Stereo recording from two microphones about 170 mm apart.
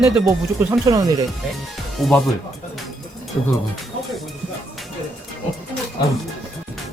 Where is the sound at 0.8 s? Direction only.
20° right (ahead or behind).